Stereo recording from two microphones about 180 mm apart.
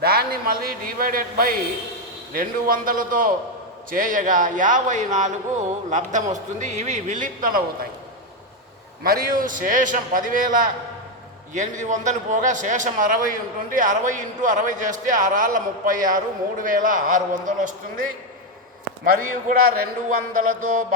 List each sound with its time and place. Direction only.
0.0 s a man's voice: 60° right (ahead or behind)
9.0 s a man's voice: 50° right (ahead or behind)
20.1 s a man's voice: 50° right (ahead or behind)